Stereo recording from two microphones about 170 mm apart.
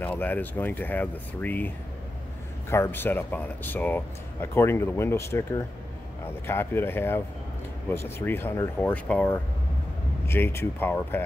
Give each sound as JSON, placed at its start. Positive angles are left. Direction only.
{"t": 0.0, "sound": "speech", "side_deg": 10}
{"t": 2.7, "sound": "speech", "side_deg": 15}